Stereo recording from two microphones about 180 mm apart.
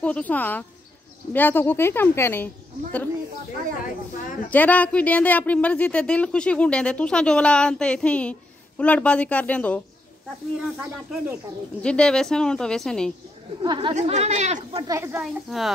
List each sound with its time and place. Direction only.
0.0 s speech: 10° left (ahead or behind)
4.5 s speech: 10° left (ahead or behind)
11.8 s a woman's voice: 5° left (ahead or behind)
13.6 s speech: 25° right (ahead or behind)
13.9 s speech: 35° right (ahead or behind)
14.8 s speech: 20° right (ahead or behind)
15.2 s a woman's voice: centre (ahead or behind)